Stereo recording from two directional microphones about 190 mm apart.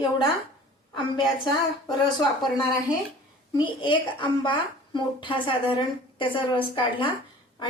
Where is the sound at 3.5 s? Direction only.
25° left (ahead or behind).